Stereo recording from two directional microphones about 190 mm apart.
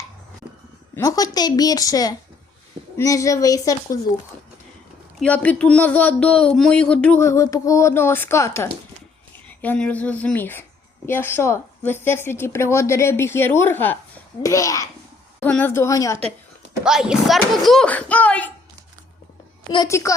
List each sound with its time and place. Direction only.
0.9 s a woman's voice: 15° left (ahead or behind)
5.2 s a woman's voice: 10° left (ahead or behind)
16.8 s a child's voice: 5° right (ahead or behind)
19.7 s a woman's voice: 20° left (ahead or behind)